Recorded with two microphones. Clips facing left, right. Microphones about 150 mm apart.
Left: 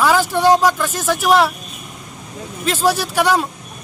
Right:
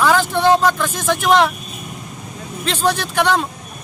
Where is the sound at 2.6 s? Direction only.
5° left (ahead or behind).